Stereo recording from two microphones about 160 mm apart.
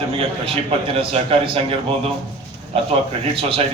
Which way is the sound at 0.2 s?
35° right (ahead or behind).